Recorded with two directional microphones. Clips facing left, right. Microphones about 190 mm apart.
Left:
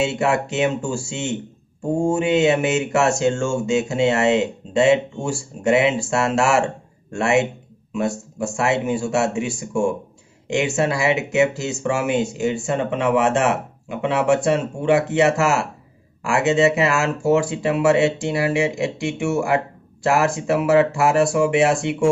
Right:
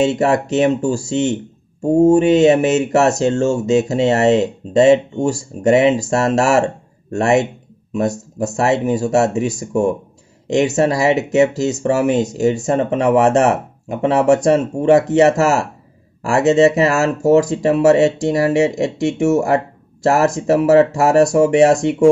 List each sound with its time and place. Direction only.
0.0 s speech: 40° right (ahead or behind)